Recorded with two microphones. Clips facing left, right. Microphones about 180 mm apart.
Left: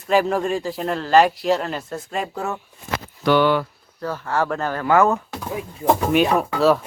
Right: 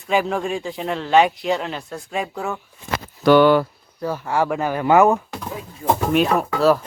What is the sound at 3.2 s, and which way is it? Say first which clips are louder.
Speech: right 4 dB; 45° right (ahead or behind).